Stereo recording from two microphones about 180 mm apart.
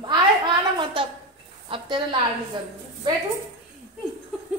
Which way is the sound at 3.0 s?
25° right (ahead or behind).